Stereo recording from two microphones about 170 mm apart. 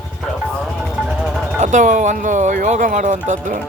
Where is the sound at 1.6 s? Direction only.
45° right (ahead or behind).